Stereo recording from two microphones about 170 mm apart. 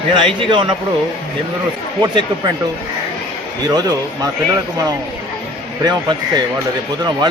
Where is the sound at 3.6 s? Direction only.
20° right (ahead or behind).